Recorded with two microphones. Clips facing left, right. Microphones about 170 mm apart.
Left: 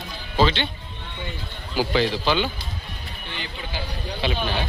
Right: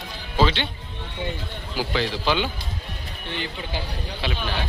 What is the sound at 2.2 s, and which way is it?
Speech, 10° right (ahead or behind).